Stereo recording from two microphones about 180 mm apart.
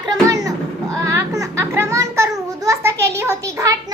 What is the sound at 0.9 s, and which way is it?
A child's voice, 15° right (ahead or behind).